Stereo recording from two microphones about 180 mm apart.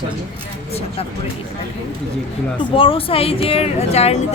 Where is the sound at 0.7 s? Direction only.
35° left (ahead or behind).